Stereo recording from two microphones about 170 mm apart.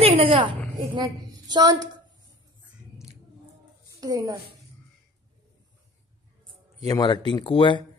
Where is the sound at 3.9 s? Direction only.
20° right (ahead or behind).